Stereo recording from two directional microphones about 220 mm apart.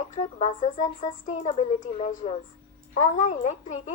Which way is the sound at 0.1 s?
30° left (ahead or behind).